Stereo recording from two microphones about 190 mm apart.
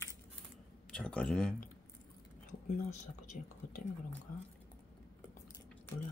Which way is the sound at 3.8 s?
45° left (ahead or behind).